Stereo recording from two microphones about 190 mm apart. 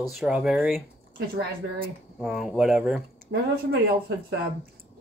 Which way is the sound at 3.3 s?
65° right (ahead or behind).